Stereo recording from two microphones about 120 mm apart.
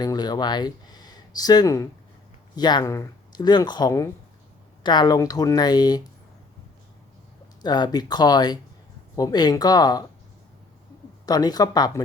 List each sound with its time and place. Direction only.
0.0 s speech: 35° left (ahead or behind)
2.8 s speech: 25° left (ahead or behind)
7.6 s speech: 35° left (ahead or behind)
11.3 s speech: 35° left (ahead or behind)